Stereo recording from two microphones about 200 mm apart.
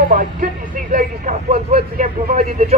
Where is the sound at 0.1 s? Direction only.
40° right (ahead or behind).